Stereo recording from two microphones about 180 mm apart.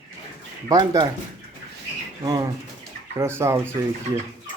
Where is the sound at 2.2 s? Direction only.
20° right (ahead or behind).